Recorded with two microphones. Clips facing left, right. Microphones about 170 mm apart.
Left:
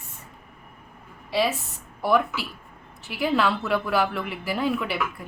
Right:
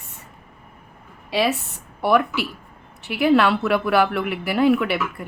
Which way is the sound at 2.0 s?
70° right (ahead or behind).